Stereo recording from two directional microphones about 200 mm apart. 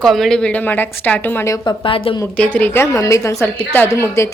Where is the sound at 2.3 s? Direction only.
10° left (ahead or behind).